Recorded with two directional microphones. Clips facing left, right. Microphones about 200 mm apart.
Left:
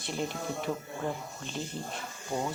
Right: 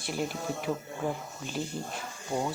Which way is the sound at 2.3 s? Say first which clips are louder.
Right 2 dB; 10° right (ahead or behind).